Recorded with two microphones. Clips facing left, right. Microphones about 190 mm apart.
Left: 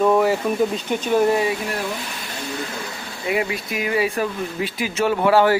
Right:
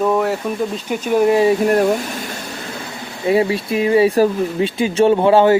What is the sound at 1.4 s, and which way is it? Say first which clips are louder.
Speech: right 9 dB; 45° right (ahead or behind).